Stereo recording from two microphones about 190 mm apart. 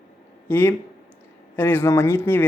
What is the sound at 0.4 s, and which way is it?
Speech, 10° left (ahead or behind).